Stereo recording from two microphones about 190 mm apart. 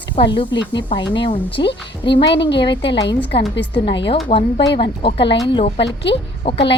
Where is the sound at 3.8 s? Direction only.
25° left (ahead or behind).